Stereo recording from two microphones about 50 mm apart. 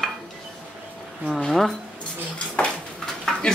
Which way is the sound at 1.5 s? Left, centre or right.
Centre.